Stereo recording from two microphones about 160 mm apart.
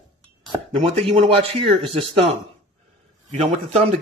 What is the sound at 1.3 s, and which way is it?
Speech, 35° right (ahead or behind).